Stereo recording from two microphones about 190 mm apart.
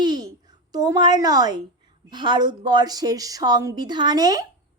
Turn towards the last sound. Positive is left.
turn(degrees=-20)  # may be behind; listen again after turning